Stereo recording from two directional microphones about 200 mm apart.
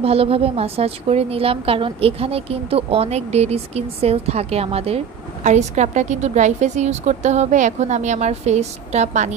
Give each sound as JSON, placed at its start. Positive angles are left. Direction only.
{"t": 0.0, "sound": "a woman's voice", "side_deg": -30}